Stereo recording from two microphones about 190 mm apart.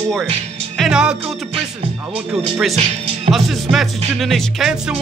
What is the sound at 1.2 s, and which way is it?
Music, 30° right (ahead or behind).